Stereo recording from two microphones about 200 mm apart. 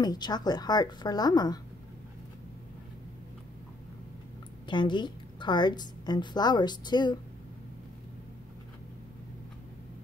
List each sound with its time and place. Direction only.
0.0 s a woman's voice: 20° left (ahead or behind)
4.6 s a woman's voice: 20° left (ahead or behind)